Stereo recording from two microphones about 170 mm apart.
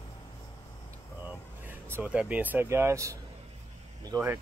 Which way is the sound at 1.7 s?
10° right (ahead or behind).